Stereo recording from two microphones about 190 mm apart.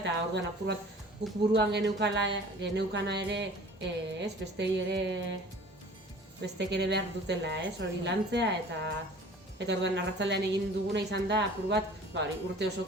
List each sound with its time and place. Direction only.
0.0 s speech: 70° right (ahead or behind)
6.6 s speech: 65° right (ahead or behind)